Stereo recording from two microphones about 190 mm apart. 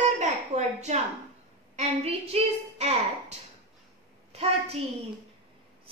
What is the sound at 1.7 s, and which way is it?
A child's voice, 35° right (ahead or behind).